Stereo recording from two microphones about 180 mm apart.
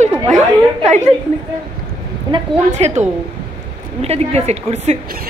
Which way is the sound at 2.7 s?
40° right (ahead or behind).